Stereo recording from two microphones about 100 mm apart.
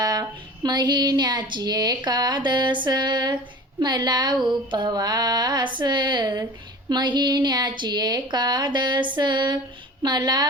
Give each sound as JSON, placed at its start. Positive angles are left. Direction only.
{"t": 0.0, "sound": "speech", "side_deg": -40}